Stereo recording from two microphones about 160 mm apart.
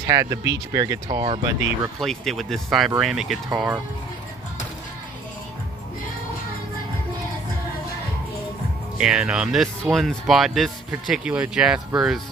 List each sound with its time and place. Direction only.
0.0 s speech: 20° right (ahead or behind)
2.0 s speech: centre (ahead or behind)
8.9 s speech: 5° right (ahead or behind)